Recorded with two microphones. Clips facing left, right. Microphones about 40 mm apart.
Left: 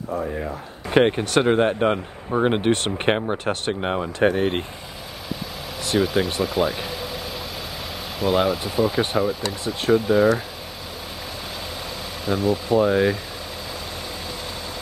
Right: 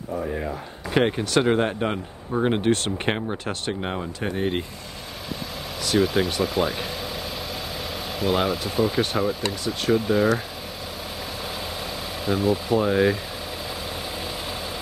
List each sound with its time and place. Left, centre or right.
0.2 s speech: centre
0.8 s speech: centre
4.2 s speech: left
5.9 s speech: centre
8.2 s speech: centre
12.3 s speech: centre